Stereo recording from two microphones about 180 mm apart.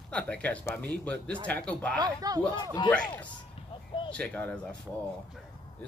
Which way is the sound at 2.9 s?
5° left (ahead or behind).